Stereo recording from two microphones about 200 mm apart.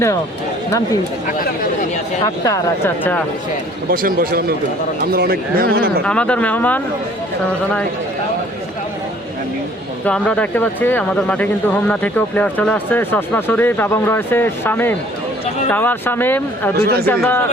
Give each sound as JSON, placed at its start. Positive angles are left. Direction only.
{"t": 2.2, "sound": "speech", "side_deg": 15}
{"t": 3.8, "sound": "speech", "side_deg": -45}
{"t": 6.1, "sound": "speech", "side_deg": 5}
{"t": 10.1, "sound": "speech", "side_deg": 5}
{"t": 16.8, "sound": "speech", "side_deg": -50}
{"t": 17.1, "sound": "speech", "side_deg": 10}